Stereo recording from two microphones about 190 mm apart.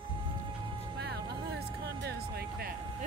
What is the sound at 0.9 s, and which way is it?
Music, 60° right (ahead or behind).